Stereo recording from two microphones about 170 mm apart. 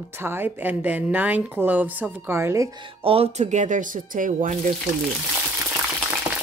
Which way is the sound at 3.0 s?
35° right (ahead or behind).